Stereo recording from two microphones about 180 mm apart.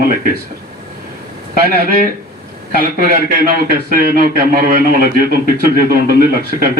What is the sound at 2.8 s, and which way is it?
Speech, 55° right (ahead or behind).